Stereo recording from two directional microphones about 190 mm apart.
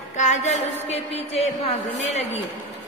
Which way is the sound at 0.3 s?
35° left (ahead or behind).